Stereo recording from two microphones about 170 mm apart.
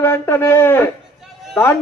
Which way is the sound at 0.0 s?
15° left (ahead or behind).